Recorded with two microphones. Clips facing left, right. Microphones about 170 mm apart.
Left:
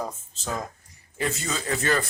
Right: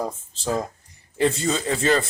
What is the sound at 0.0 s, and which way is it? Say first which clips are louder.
A man's voice: right 5 dB; 30° right (ahead or behind).